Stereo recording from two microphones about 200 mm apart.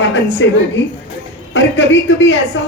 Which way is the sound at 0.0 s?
65° left (ahead or behind).